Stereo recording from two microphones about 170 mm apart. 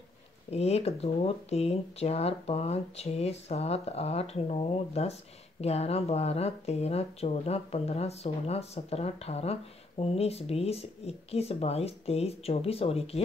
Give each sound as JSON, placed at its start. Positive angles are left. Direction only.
{"t": 0.5, "sound": "speech", "side_deg": 40}